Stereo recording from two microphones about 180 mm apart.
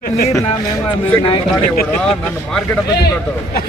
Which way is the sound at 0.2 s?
15° left (ahead or behind).